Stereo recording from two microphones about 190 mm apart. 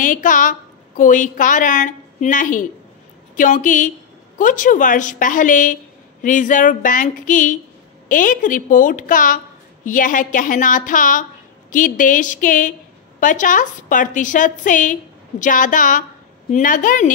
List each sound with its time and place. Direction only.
0.0 s a woman's voice: 45° left (ahead or behind)